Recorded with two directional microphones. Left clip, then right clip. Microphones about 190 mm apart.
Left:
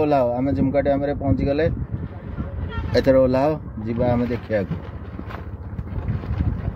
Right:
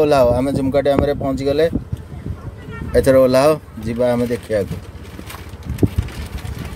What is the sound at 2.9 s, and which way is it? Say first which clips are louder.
Speech: right 5 dB; 40° right (ahead or behind).